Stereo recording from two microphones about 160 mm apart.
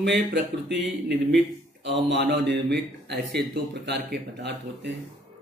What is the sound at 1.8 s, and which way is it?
Speech, 90° right.